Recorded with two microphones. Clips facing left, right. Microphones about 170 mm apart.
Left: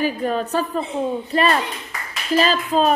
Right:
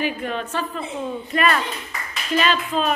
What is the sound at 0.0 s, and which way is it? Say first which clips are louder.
Speech: left 4 dB; 40° left (ahead or behind).